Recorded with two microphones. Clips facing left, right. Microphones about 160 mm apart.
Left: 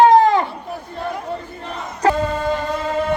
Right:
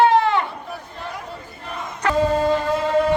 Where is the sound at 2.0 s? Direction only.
30° left (ahead or behind).